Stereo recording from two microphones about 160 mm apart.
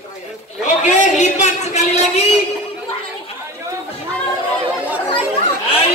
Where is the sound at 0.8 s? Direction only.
50° left (ahead or behind).